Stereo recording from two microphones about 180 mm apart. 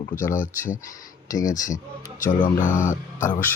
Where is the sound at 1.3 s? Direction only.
20° left (ahead or behind).